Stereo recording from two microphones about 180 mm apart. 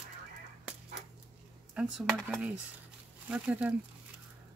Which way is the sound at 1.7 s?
5° right (ahead or behind).